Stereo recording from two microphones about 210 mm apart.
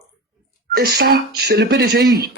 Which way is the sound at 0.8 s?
50° right (ahead or behind).